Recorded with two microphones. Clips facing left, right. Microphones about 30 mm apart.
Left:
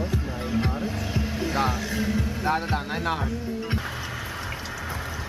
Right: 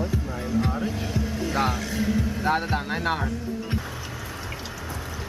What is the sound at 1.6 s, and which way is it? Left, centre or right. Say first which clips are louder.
Speech: right 1 dB; centre.